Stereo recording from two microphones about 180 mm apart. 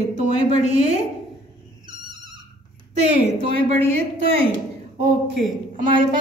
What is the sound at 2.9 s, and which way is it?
Speech, 35° right (ahead or behind).